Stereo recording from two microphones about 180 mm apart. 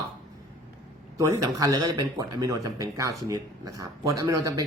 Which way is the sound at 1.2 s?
20° right (ahead or behind).